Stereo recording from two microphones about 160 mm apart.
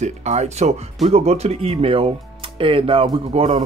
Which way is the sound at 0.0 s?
45° right (ahead or behind).